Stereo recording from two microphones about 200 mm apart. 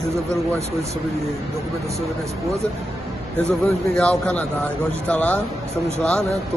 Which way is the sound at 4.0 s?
5° left (ahead or behind).